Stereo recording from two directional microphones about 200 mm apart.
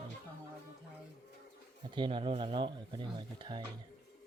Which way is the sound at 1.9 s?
25° right (ahead or behind).